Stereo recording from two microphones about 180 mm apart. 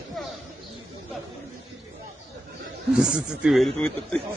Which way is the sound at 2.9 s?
5° right (ahead or behind).